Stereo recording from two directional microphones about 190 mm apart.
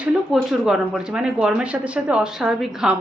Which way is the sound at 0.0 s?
Centre (ahead or behind).